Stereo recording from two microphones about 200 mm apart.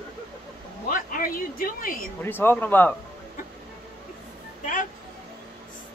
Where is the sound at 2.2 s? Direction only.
10° left (ahead or behind).